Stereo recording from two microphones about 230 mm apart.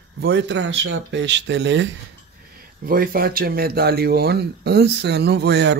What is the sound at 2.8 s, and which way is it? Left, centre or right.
Speech, right.